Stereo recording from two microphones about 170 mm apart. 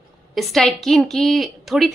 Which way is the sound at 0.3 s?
Centre (ahead or behind).